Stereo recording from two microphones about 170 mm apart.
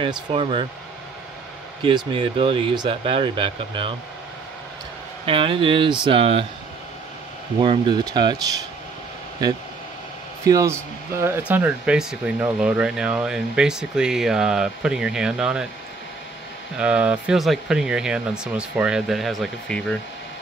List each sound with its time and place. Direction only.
0.0 s speech: 30° right (ahead or behind)
1.8 s speech: 30° right (ahead or behind)
5.2 s speech: 30° right (ahead or behind)
7.6 s speech: 30° right (ahead or behind)
10.4 s speech: 20° right (ahead or behind)
16.7 s speech: 5° right (ahead or behind)